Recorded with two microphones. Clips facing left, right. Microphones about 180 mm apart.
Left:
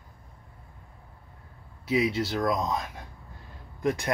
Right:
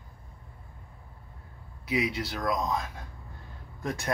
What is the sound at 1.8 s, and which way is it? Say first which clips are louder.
Speech: left 4 dB; 25° left (ahead or behind).